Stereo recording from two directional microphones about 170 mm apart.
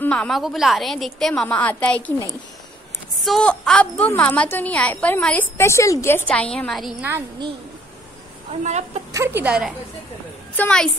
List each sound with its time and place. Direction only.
0.0 s a woman's voice: 5° left (ahead or behind)
8.5 s a woman's voice: 40° right (ahead or behind)
9.1 s a woman's voice: 15° right (ahead or behind)
10.5 s a woman's voice: 5° left (ahead or behind)